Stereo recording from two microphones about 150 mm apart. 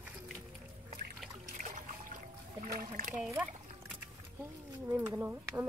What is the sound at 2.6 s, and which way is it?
Rowboat, 75° right (ahead or behind).